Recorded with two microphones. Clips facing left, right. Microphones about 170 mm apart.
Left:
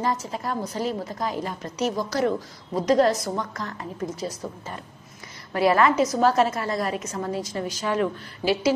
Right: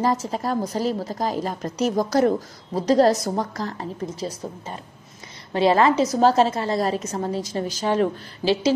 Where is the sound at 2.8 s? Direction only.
35° right (ahead or behind).